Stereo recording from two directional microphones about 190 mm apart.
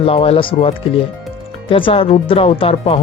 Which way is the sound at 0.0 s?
30° left (ahead or behind).